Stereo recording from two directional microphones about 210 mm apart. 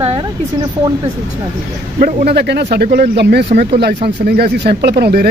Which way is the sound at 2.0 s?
45° right (ahead or behind).